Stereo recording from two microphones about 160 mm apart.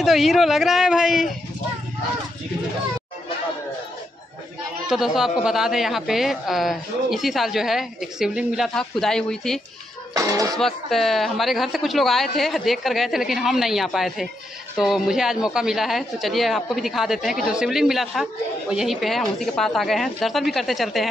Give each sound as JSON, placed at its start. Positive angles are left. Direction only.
{"t": 0.0, "sound": "a woman's voice", "side_deg": 0}
{"t": 4.8, "sound": "a woman's voice", "side_deg": 0}
{"t": 10.1, "sound": "speech", "side_deg": -20}
{"t": 10.6, "sound": "a woman's voice", "side_deg": 0}